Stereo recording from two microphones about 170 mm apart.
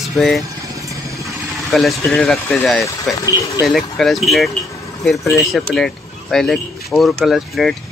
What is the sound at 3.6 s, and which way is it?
Speech, centre (ahead or behind).